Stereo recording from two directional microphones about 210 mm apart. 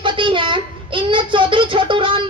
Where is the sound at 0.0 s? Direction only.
25° right (ahead or behind).